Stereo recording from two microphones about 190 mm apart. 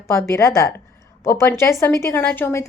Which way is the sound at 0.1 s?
15° left (ahead or behind).